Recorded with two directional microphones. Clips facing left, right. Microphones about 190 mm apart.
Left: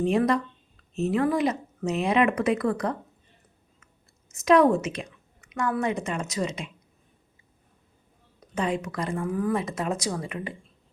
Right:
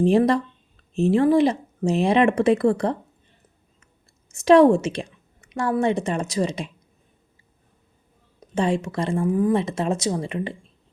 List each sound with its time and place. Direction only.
0.0 s speech: 30° right (ahead or behind)
4.3 s a woman's voice: 30° right (ahead or behind)
8.4 s speech: 30° right (ahead or behind)